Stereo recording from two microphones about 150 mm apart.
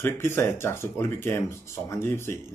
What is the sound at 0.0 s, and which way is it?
Speech, 15° left (ahead or behind).